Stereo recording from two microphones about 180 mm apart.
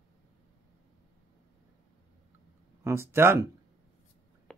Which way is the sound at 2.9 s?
15° right (ahead or behind).